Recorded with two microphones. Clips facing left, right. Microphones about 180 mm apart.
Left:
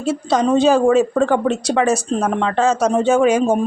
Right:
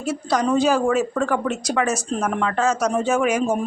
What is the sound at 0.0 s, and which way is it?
Speech, 25° left (ahead or behind).